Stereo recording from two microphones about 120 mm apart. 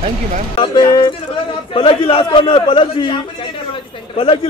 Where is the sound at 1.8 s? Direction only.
50° left (ahead or behind).